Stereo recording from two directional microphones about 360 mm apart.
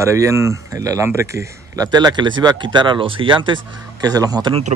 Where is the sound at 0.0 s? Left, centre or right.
Centre.